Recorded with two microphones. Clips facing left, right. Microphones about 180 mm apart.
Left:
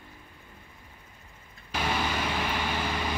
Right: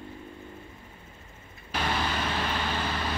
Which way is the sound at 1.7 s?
10° left (ahead or behind).